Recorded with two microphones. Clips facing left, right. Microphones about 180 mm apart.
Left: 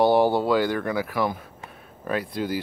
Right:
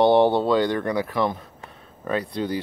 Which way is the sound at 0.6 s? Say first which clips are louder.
Right 2 dB; 20° right (ahead or behind).